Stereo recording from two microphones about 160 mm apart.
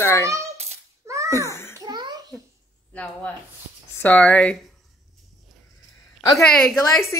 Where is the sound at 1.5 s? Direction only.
15° left (ahead or behind).